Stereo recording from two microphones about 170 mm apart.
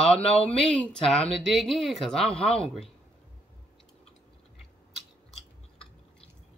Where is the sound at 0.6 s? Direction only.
5° left (ahead or behind).